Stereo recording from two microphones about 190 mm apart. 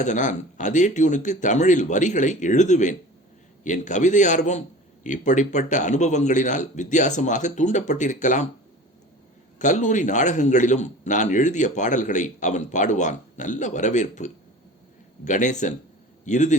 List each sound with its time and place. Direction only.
0.0 s a man's voice: 40° left (ahead or behind)
9.6 s a man's voice: 40° left (ahead or behind)